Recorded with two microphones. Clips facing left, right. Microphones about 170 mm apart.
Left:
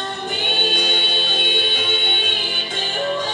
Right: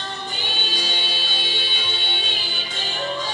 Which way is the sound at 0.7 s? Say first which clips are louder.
Left 6 dB; 60° left (ahead or behind).